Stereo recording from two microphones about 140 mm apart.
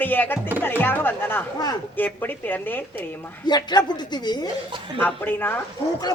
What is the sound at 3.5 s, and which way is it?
Speech, 30° left (ahead or behind).